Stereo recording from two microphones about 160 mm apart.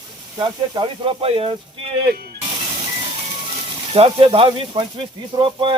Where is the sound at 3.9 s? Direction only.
35° right (ahead or behind).